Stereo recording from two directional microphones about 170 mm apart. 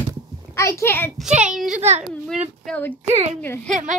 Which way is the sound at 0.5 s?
15° left (ahead or behind).